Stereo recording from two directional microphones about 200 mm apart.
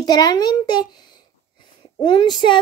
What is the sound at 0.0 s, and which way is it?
A child's voice, 20° left (ahead or behind).